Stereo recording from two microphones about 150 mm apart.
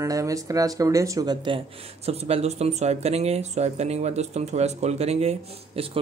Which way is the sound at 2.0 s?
40° right (ahead or behind).